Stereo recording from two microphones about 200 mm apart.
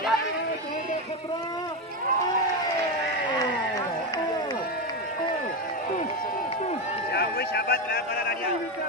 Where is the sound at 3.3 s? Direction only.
15° left (ahead or behind).